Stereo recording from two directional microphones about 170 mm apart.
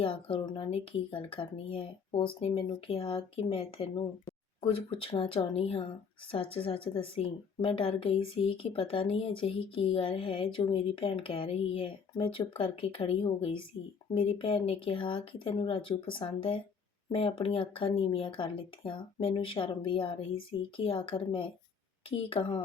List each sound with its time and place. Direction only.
0.0 s a woman's voice: 30° left (ahead or behind)